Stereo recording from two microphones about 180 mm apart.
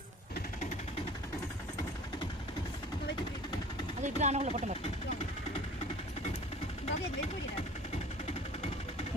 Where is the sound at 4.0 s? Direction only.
40° right (ahead or behind).